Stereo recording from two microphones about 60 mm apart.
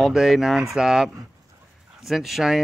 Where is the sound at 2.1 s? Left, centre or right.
Centre.